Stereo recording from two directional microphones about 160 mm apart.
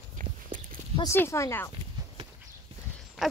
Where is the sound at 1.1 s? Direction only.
15° left (ahead or behind).